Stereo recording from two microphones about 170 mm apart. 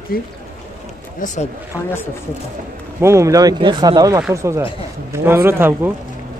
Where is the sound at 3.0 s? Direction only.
15° right (ahead or behind).